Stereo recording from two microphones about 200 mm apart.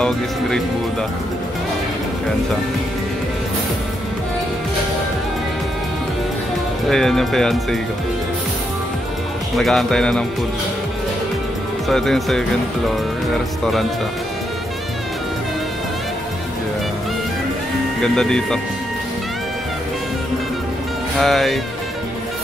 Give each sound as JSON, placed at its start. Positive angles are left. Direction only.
{"t": 6.9, "sound": "speech", "side_deg": 0}
{"t": 9.6, "sound": "speech", "side_deg": 0}
{"t": 11.9, "sound": "speech", "side_deg": 0}
{"t": 18.0, "sound": "speech", "side_deg": 5}
{"t": 21.2, "sound": "speech", "side_deg": 0}